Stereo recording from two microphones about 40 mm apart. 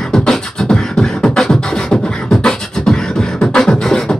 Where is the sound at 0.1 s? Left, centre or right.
Centre.